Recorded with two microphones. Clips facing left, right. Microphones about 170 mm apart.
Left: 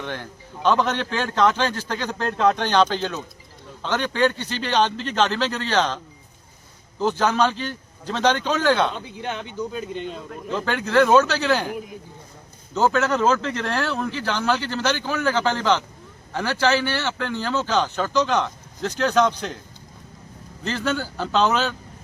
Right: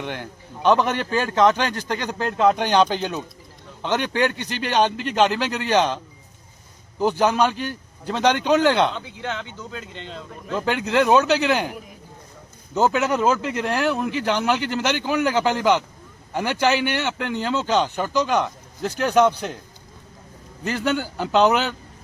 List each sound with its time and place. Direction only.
0.0 s speech: 15° right (ahead or behind)
7.0 s speech: 15° right (ahead or behind)
9.2 s speech: 15° left (ahead or behind)
10.5 s speech: 15° right (ahead or behind)
12.7 s speech: 15° right (ahead or behind)
20.7 s speech: 15° right (ahead or behind)